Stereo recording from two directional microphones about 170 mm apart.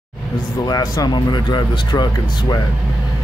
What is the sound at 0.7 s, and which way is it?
Speech, 25° left (ahead or behind).